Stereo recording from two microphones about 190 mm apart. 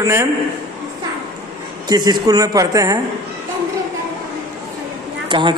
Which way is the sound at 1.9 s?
20° right (ahead or behind).